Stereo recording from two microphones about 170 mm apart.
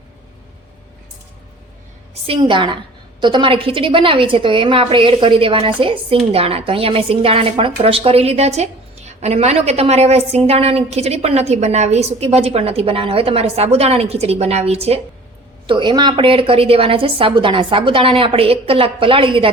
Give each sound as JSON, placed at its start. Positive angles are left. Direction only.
{"t": 2.2, "sound": "a woman's voice", "side_deg": -30}